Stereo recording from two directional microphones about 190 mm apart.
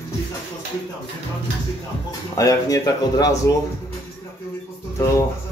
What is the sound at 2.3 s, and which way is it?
Speech, 20° left (ahead or behind).